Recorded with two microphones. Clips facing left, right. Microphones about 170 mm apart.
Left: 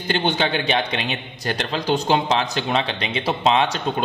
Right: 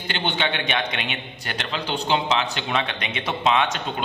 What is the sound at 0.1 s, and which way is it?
A man's voice, 40° left (ahead or behind).